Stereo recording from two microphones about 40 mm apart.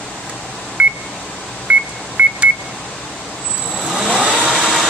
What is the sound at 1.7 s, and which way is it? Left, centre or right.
Telephone dialing, right.